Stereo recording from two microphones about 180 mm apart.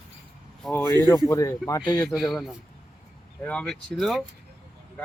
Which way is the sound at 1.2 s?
15° left (ahead or behind).